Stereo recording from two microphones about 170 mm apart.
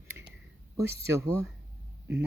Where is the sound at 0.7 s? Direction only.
15° right (ahead or behind).